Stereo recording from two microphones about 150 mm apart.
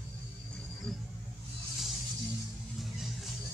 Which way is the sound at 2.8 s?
Centre (ahead or behind).